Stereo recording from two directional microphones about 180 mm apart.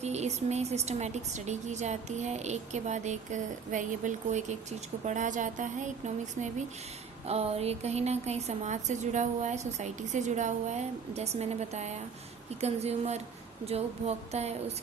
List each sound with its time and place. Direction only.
0.0 s a woman's voice: 40° right (ahead or behind)